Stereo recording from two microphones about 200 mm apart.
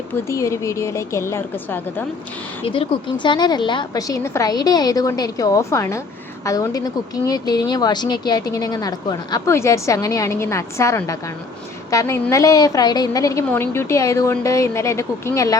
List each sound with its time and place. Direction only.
0.3 s speech: 15° left (ahead or behind)
2.6 s a woman's voice: 25° left (ahead or behind)